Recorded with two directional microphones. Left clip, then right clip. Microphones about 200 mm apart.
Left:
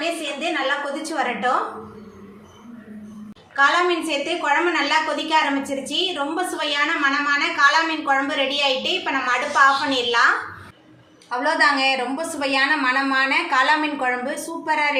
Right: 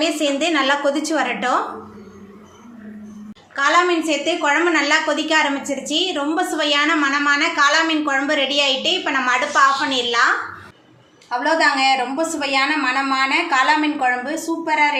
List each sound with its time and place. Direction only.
1.0 s a woman's voice: 40° right (ahead or behind)
3.5 s a woman's voice: 25° right (ahead or behind)
11.3 s a woman's voice: 10° right (ahead or behind)